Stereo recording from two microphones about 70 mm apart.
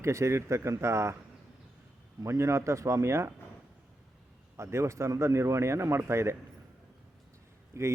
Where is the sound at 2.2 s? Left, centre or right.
Right.